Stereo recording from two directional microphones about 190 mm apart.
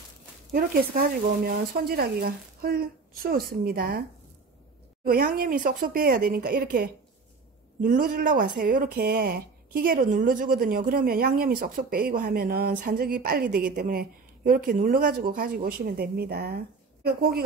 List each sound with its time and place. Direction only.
0.5 s speech: 50° right (ahead or behind)
5.0 s speech: 50° right (ahead or behind)